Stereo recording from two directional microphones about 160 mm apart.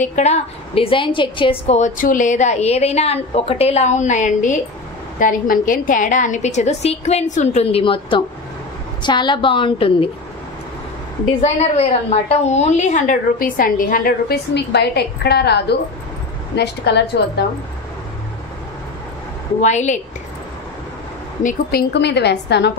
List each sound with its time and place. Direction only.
0.0 s a woman's voice: 45° left (ahead or behind)
1.8 s a woman's voice: 55° left (ahead or behind); by 10.0 s 35° left (ahead or behind)
11.4 s a woman's voice: 45° left (ahead or behind); by 17.0 s 90° left
19.6 s a woman's voice: 50° left (ahead or behind)
21.4 s a woman's voice: 60° left (ahead or behind); by 22.7 s 90° left